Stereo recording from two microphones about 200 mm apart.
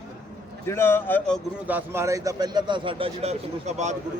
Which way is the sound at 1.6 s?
10° right (ahead or behind).